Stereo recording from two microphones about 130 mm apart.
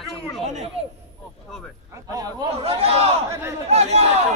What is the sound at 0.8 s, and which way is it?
Speech, 50° right (ahead or behind).